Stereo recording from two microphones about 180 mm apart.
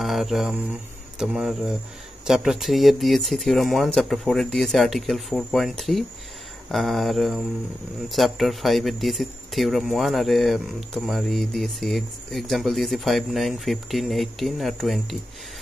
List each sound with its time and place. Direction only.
0.0 s mantra: centre (ahead or behind)
1.2 s speech: 5° right (ahead or behind)